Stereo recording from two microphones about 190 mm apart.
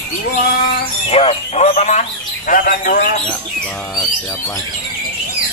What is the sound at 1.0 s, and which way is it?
Speech, 30° left (ahead or behind).